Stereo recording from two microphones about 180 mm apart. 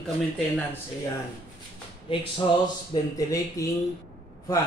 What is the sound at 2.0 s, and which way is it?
Speech, 30° left (ahead or behind).